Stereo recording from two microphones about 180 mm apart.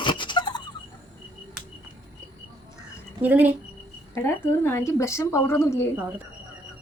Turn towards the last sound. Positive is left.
turn(degrees=-10)  # may be behind; listen again after turning